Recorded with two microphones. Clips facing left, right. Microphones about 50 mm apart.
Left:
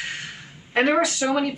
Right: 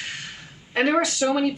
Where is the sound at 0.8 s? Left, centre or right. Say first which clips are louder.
Left 1 dB; centre.